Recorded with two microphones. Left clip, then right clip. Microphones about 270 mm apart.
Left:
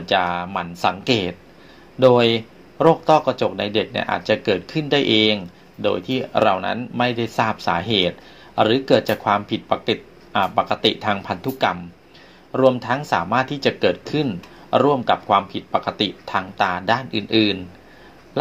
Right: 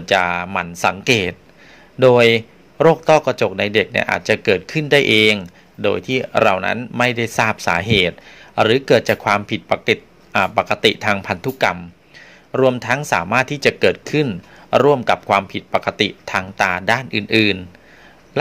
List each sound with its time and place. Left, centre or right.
0.0 s speech: right
17.1 s speech: right